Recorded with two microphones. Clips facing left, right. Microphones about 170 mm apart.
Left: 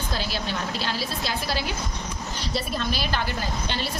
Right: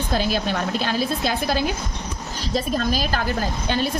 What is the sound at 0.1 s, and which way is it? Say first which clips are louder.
A woman's voice: right 8 dB; 50° right (ahead or behind).